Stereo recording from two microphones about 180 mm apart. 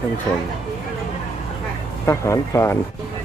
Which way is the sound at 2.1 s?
15° left (ahead or behind).